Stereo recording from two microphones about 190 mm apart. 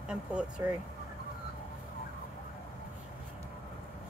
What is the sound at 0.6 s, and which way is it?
Speech, 15° right (ahead or behind).